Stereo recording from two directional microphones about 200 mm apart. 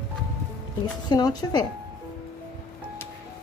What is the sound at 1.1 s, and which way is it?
Speech, 20° left (ahead or behind).